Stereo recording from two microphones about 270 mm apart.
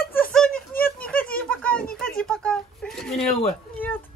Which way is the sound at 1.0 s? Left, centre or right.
Centre.